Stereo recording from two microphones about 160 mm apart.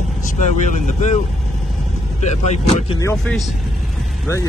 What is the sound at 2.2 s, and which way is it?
Speech, 45° left (ahead or behind).